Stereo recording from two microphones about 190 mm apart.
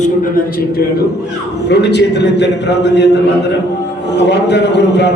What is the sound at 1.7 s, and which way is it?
A man's voice, 65° left (ahead or behind).